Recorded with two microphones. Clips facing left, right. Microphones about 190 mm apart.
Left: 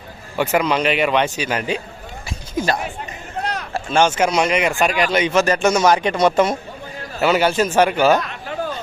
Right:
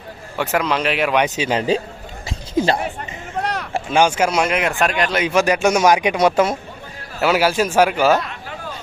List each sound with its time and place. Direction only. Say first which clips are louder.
0.3 s speech: left 2 dB; centre (ahead or behind)
1.2 s a woman's voice: right 2 dB; 25° right (ahead or behind)
4.2 s speech: left 1 dB; 5° right (ahead or behind)
5.3 s speech: even; 10° right (ahead or behind)